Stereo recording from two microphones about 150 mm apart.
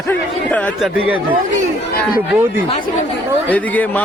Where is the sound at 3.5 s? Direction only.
10° left (ahead or behind).